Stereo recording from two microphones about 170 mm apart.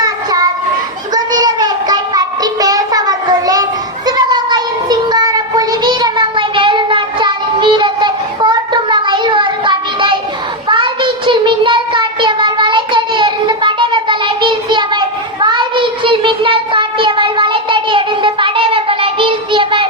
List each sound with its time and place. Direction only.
0.0 s children playing: 20° right (ahead or behind)
1.1 s child singing: 25° right (ahead or behind)